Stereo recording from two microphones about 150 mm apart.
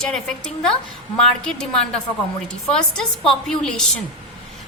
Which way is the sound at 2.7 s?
5° left (ahead or behind).